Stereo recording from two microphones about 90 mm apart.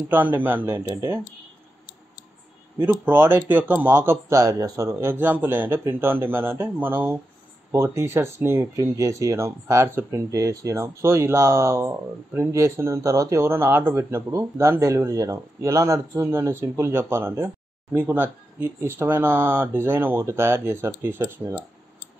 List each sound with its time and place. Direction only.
0.1 s speech: 20° right (ahead or behind)
2.8 s speech: 25° right (ahead or behind)
4.3 s speech: 40° right (ahead or behind)